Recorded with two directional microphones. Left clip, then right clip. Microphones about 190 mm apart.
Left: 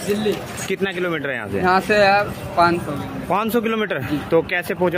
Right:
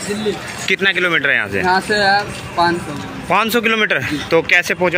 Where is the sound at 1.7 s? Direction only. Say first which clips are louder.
Even; 25° left (ahead or behind).